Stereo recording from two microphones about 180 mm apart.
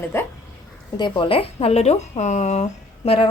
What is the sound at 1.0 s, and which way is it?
Speech, 25° left (ahead or behind).